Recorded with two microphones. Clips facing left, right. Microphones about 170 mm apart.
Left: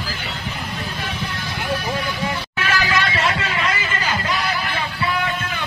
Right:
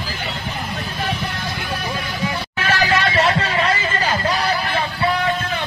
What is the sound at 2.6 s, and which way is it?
Music, 35° right (ahead or behind).